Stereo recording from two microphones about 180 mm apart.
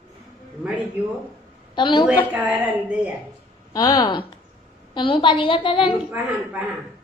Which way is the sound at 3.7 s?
20° left (ahead or behind).